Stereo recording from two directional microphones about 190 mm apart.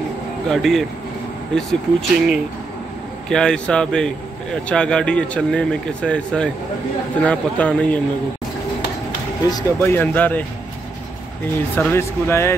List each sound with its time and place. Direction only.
0.5 s speech: centre (ahead or behind)
9.5 s speech: 20° left (ahead or behind)
9.9 s speech: 10° left (ahead or behind)
11.7 s speech: 10° left (ahead or behind)